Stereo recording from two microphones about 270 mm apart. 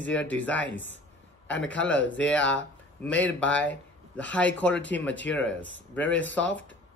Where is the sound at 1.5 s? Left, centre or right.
Centre.